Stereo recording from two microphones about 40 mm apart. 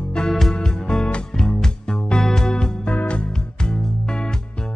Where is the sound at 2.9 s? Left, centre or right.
Left.